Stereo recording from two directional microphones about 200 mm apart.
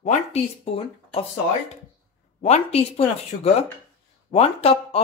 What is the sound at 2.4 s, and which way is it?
Speech, 30° left (ahead or behind).